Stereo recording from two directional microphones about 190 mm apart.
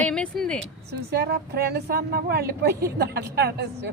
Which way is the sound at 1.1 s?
60° right (ahead or behind).